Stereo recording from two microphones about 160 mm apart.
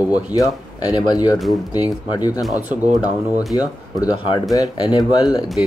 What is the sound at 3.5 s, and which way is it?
Speech, 25° left (ahead or behind).